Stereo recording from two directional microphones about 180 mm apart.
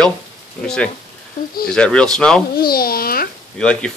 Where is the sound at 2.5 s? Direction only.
55° left (ahead or behind).